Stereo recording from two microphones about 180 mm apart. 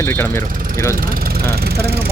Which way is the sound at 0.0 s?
15° left (ahead or behind).